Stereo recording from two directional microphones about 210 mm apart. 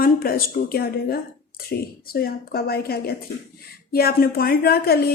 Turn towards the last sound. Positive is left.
turn(degrees=50)  # may be behind; listen again after turning